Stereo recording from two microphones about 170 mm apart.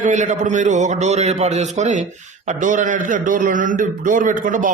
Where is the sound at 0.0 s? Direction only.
45° right (ahead or behind).